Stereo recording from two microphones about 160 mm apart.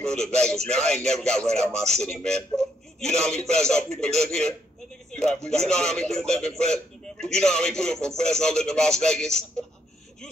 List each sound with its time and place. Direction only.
0.1 s a man's voice: 5° left (ahead or behind)